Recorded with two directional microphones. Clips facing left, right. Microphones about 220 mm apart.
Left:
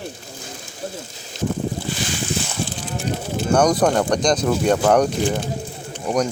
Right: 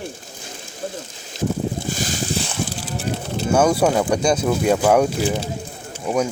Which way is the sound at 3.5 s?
5° right (ahead or behind).